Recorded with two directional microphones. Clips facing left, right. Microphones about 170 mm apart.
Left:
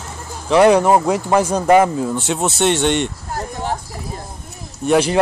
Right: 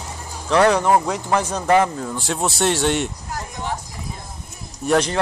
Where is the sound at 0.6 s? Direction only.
15° left (ahead or behind).